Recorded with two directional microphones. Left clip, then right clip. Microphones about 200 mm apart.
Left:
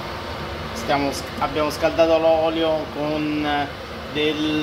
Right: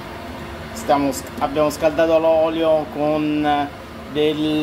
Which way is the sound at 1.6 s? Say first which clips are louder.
Right 2 dB; 30° right (ahead or behind).